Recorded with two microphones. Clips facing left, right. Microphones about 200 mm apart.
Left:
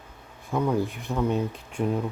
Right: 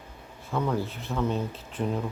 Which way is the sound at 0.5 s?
10° left (ahead or behind).